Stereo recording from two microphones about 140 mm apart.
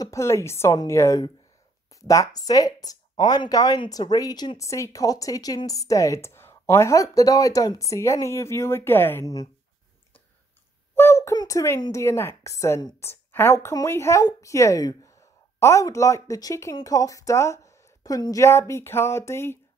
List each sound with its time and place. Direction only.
0.0 s speech: 20° left (ahead or behind)
11.0 s speech: 20° left (ahead or behind)